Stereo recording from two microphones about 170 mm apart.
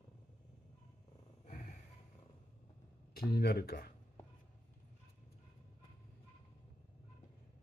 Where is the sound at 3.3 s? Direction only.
65° left (ahead or behind).